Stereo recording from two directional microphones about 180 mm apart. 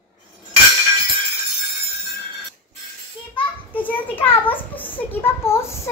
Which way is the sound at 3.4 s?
10° left (ahead or behind).